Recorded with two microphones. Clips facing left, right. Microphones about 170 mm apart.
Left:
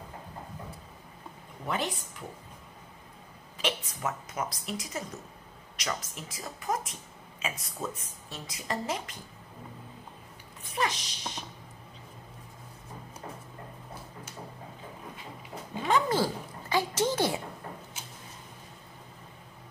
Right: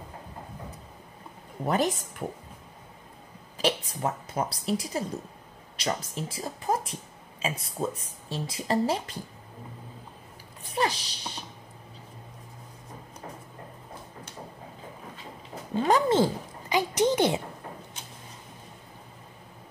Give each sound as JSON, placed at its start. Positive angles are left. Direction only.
{"t": 1.6, "sound": "a woman's voice", "side_deg": -40}
{"t": 3.6, "sound": "speech", "side_deg": -35}
{"t": 10.6, "sound": "speech", "side_deg": -35}
{"t": 16.1, "sound": "a child's voice", "side_deg": -20}